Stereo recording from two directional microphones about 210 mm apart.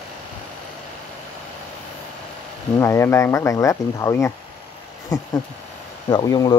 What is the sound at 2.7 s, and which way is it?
Speech, 15° left (ahead or behind).